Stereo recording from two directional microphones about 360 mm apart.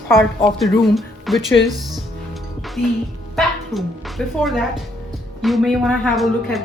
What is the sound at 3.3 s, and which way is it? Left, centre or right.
A woman's voice, centre.